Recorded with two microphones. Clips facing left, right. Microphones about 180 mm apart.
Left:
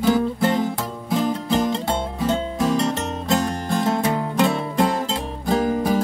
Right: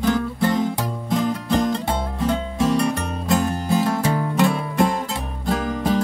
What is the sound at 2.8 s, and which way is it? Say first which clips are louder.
Music: right 1 dB; 25° left (ahead or behind).